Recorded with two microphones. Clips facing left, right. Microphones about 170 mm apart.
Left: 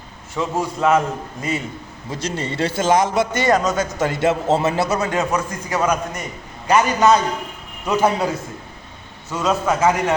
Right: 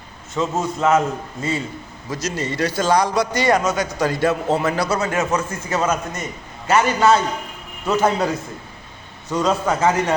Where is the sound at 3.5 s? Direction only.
20° right (ahead or behind).